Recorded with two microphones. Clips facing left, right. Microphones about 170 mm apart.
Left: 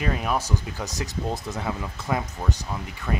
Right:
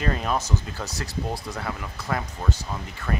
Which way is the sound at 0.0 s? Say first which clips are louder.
Even; 10° left (ahead or behind).